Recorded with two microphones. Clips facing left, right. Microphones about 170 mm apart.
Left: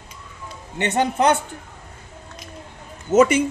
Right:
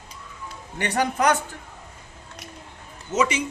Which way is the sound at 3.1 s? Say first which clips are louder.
Left 8 dB; 50° left (ahead or behind).